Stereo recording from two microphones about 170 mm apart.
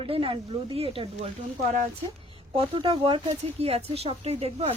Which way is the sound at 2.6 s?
30° right (ahead or behind).